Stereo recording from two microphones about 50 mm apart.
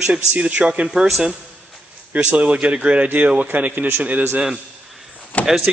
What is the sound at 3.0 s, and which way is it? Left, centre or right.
A man's voice, right.